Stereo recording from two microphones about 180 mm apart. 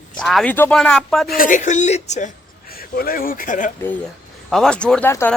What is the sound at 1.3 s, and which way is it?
A woman's voice, 50° left (ahead or behind).